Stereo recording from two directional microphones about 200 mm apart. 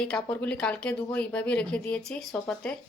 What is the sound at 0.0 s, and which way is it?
Speech, 5° left (ahead or behind).